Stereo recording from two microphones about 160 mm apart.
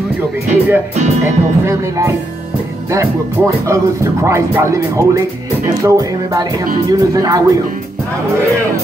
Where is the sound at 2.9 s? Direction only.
20° right (ahead or behind).